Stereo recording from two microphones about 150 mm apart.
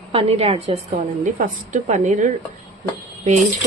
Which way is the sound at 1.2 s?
55° right (ahead or behind).